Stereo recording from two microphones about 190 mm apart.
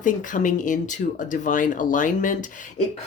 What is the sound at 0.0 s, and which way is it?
Speech, 40° left (ahead or behind).